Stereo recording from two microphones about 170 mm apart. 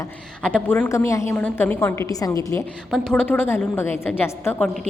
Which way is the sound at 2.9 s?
5° left (ahead or behind).